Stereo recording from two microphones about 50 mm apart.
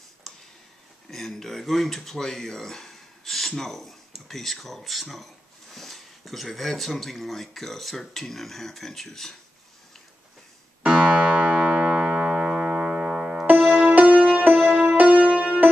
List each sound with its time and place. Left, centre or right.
0.3 s tick: centre
1.1 s speech: centre
11.1 s music: right
13.5 s music: right